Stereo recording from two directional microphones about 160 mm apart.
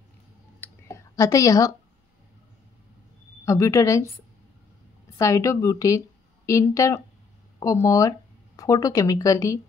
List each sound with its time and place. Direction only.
0.6 s clicking: 20° left (ahead or behind)
3.4 s speech: 20° left (ahead or behind)
5.1 s a woman's voice: 20° left (ahead or behind)